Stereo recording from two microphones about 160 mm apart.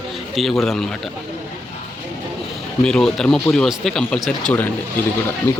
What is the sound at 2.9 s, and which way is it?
Speech, 5° left (ahead or behind).